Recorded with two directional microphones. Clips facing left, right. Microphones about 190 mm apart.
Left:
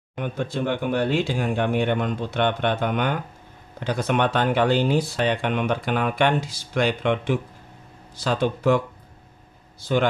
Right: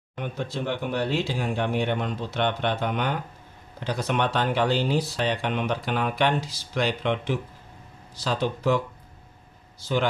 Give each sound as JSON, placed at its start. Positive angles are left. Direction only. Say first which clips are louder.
{"t": 0.1, "sound": "a man's voice", "louder": "left 4 dB", "side_deg": 55}